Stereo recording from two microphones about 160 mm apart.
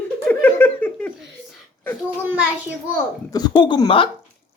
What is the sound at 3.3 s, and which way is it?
Speech, 25° left (ahead or behind).